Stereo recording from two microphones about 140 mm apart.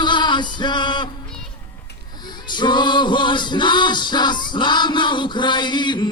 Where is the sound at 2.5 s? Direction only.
35° left (ahead or behind).